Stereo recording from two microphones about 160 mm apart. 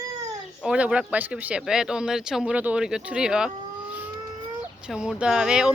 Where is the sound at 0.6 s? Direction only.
5° right (ahead or behind).